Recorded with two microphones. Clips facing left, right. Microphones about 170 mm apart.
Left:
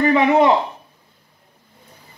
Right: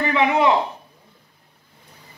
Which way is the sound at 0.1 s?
40° left (ahead or behind).